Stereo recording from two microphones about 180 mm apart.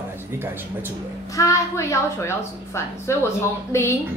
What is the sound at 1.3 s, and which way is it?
A woman's voice, 15° left (ahead or behind).